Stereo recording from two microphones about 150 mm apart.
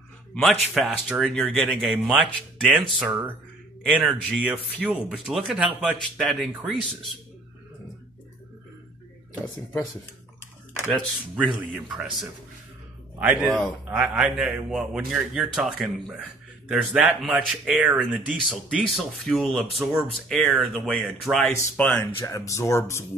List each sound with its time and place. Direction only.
0.3 s a man's voice: 5° left (ahead or behind)
3.1 s a man's voice: 10° right (ahead or behind)
10.9 s a man's voice: centre (ahead or behind)
13.2 s a man's voice: 10° right (ahead or behind)
21.5 s speech: 15° left (ahead or behind)